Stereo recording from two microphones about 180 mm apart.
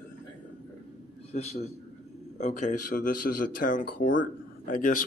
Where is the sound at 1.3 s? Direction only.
35° left (ahead or behind).